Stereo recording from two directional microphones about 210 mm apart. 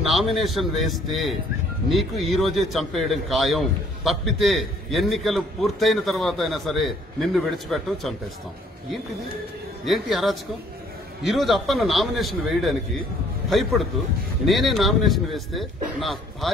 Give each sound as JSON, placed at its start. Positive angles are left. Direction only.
{"t": 0.0, "sound": "a man's voice", "side_deg": 0}
{"t": 9.8, "sound": "a man's voice", "side_deg": 0}